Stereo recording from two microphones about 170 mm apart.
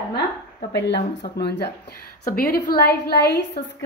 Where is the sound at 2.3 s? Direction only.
60° left (ahead or behind).